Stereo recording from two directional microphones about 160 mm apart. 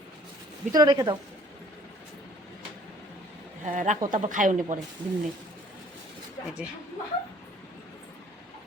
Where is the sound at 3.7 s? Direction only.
50° right (ahead or behind).